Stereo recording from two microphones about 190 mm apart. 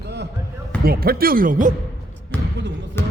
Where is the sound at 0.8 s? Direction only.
50° right (ahead or behind).